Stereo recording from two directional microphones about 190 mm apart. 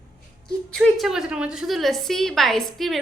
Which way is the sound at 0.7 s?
Centre (ahead or behind).